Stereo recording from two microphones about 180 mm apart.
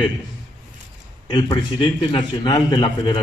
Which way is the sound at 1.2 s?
25° left (ahead or behind).